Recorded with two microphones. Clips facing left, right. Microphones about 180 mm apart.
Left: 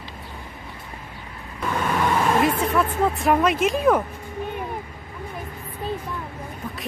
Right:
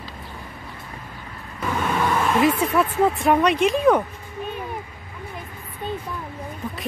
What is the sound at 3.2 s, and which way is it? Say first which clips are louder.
Speech: left 1 dB; centre (ahead or behind).